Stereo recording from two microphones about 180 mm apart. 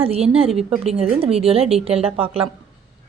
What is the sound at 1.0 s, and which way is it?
A woman's voice, 35° right (ahead or behind).